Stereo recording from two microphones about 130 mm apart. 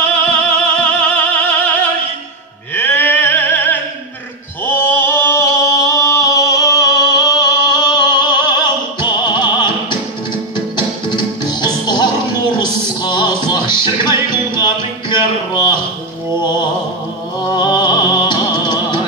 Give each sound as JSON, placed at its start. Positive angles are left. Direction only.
{"t": 0.2, "sound": "music", "side_deg": 10}
{"t": 4.6, "sound": "a sound", "side_deg": 15}
{"t": 11.1, "sound": "music", "side_deg": 35}
{"t": 17.6, "sound": "music", "side_deg": 35}